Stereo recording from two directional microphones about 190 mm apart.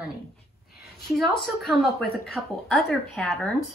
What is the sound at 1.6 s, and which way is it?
Speech, centre (ahead or behind).